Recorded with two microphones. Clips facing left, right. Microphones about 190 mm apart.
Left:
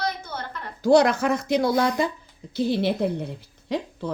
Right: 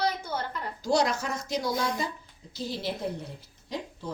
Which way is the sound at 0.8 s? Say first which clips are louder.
Left 9 dB; 60° left (ahead or behind).